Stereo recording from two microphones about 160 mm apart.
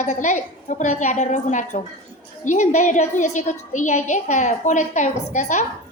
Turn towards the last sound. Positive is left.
turn(degrees=50)  # may be behind; listen again after turning